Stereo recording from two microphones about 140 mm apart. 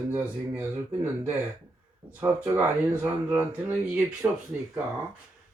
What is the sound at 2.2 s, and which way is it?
Speech, 15° right (ahead or behind).